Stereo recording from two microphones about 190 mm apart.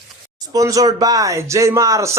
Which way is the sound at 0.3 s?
20° right (ahead or behind).